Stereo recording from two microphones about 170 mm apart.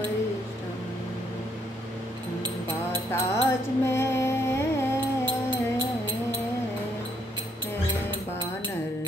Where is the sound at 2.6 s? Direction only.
15° left (ahead or behind).